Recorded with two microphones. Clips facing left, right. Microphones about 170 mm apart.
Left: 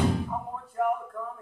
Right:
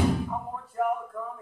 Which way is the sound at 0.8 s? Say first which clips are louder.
Even; centre (ahead or behind).